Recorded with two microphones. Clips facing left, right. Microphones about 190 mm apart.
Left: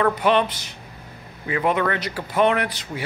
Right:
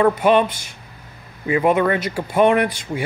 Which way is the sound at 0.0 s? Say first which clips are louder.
Right 4 dB; 10° right (ahead or behind).